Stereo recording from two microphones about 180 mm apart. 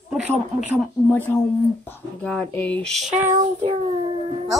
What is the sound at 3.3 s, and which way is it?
Child singing, 40° right (ahead or behind).